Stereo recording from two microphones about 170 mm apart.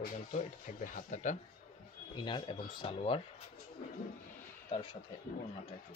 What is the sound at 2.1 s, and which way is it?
Speech, 30° left (ahead or behind).